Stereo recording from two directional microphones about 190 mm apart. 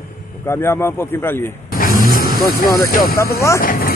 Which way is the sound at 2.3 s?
50° left (ahead or behind).